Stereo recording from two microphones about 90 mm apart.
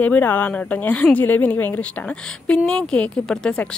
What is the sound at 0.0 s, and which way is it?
A woman's voice, 20° left (ahead or behind).